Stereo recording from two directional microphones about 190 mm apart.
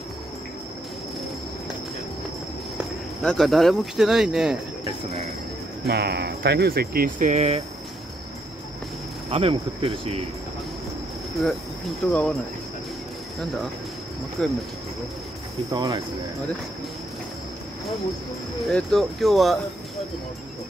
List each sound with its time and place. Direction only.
3.2 s speech: centre (ahead or behind)
5.9 s speech: 60° right (ahead or behind); by 7.6 s 35° right (ahead or behind)
9.3 s speech: 30° right (ahead or behind)
12.1 s speech: 5° left (ahead or behind)
14.4 s speech: 5° left (ahead or behind)
15.7 s speech: 20° right (ahead or behind)
18.7 s speech: 5° left (ahead or behind)